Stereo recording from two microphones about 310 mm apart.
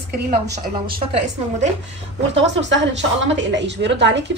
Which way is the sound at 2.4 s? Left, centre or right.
Right.